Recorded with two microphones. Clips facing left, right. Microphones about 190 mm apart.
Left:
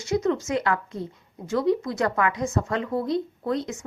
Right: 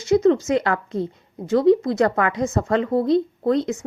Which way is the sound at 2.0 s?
35° right (ahead or behind).